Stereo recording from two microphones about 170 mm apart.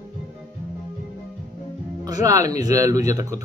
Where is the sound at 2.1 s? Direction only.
20° right (ahead or behind).